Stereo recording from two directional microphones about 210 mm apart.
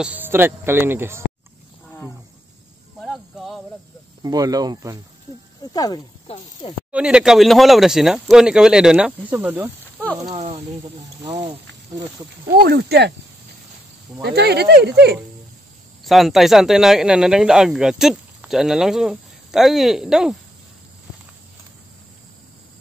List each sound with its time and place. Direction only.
0.0 s speech: 10° right (ahead or behind)
1.9 s roaring cats: 10° left (ahead or behind)
3.0 s a sound: centre (ahead or behind)
4.2 s speech: 15° right (ahead or behind)
5.6 s speech: 20° left (ahead or behind)
6.2 s speech: 30° left (ahead or behind)
6.9 s speech: 5° right (ahead or behind)
10.3 s speech: 30° right (ahead or behind)
12.6 s speech: 50° right (ahead or behind)
14.2 s speech: 50° right (ahead or behind)
16.0 s speech: centre (ahead or behind)